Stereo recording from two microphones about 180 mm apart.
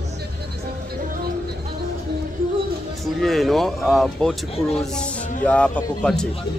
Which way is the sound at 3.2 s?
Centre (ahead or behind).